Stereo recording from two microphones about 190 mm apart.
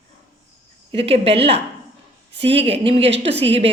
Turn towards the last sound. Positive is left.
turn(degrees=-30)  # may be behind; listen again after turning